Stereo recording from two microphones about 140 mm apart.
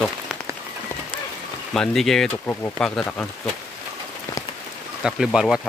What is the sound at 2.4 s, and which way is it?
Speech, 15° left (ahead or behind).